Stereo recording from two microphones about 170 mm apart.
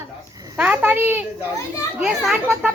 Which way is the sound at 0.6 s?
10° right (ahead or behind).